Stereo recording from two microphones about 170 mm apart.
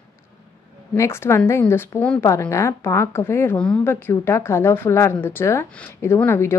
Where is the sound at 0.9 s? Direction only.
15° left (ahead or behind).